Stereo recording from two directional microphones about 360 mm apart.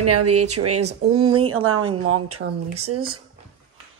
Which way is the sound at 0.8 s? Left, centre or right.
Centre.